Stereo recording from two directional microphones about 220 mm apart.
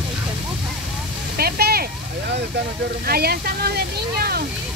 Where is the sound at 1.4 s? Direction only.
45° right (ahead or behind).